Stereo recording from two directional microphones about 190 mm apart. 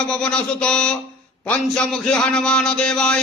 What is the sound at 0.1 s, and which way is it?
A man's voice, 5° left (ahead or behind).